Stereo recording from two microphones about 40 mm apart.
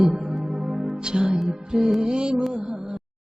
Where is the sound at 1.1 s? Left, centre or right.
Right.